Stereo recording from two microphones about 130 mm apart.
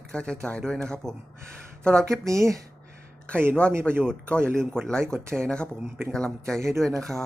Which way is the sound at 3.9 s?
15° right (ahead or behind).